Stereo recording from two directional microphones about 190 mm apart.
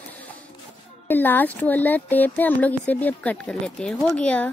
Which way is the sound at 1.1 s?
10° left (ahead or behind).